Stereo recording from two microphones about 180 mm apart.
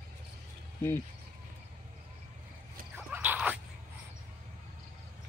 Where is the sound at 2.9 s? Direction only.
10° right (ahead or behind).